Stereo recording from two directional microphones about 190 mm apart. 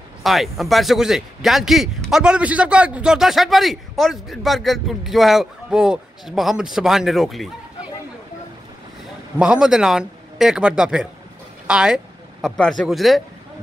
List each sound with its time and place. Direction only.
0.2 s speech: centre (ahead or behind)
9.4 s speech: 5° right (ahead or behind)